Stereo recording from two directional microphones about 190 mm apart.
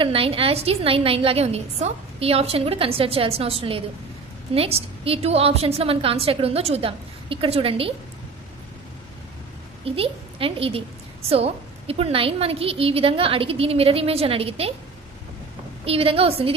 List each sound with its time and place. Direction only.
0.0 s a woman's voice: 30° right (ahead or behind)
9.8 s a woman's voice: 30° right (ahead or behind)
15.8 s a woman's voice: 30° right (ahead or behind)